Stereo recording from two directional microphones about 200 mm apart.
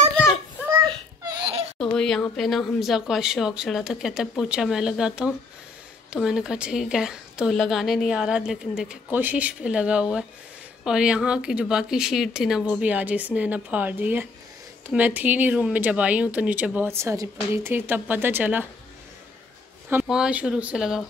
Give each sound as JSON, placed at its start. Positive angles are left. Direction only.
{"t": 0.8, "sound": "a sound", "side_deg": -20}
{"t": 1.8, "sound": "a woman's voice", "side_deg": 5}
{"t": 19.9, "sound": "a woman's voice", "side_deg": -5}